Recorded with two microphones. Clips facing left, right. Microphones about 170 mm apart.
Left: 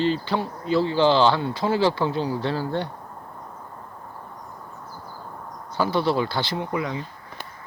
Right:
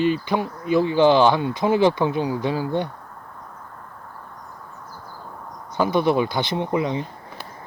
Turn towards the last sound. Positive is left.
turn(degrees=-20)  # may be behind; listen again after turning